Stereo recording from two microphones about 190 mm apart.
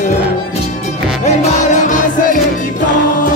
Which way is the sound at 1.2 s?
40° left (ahead or behind).